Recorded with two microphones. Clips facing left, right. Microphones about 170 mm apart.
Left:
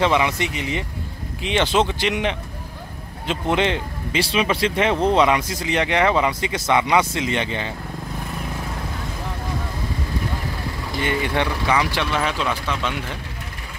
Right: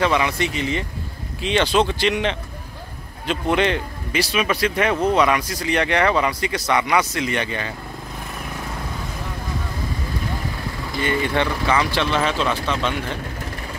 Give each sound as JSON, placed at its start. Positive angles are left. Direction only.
{"t": 0.0, "sound": "speech", "side_deg": 20}
{"t": 11.0, "sound": "speech", "side_deg": 15}